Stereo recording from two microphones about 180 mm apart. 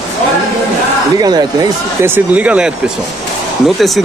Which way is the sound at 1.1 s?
20° right (ahead or behind).